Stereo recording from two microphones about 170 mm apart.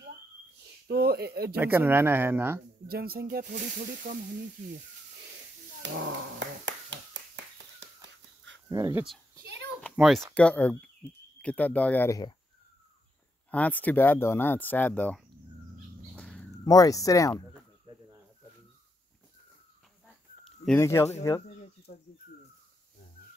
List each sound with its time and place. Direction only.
0.8 s speech: 70° right (ahead or behind)
1.6 s speech: 15° right (ahead or behind)
2.9 s speech: 65° right (ahead or behind)
5.8 s a sound: 90° right
8.6 s speech: 15° right (ahead or behind)
9.9 s speech: centre (ahead or behind)
13.5 s speech: 10° left (ahead or behind)
16.2 s a sound: 5° left (ahead or behind)
16.6 s speech: 20° left (ahead or behind)
17.9 s snake: 30° right (ahead or behind)
20.4 s chicken: 5° left (ahead or behind)
20.8 s speech: 15° left (ahead or behind)